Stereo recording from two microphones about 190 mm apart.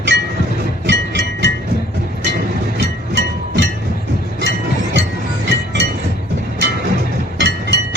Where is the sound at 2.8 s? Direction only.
65° right (ahead or behind).